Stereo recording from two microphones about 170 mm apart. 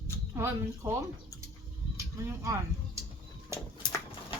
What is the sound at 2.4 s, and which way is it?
Speech, 20° right (ahead or behind).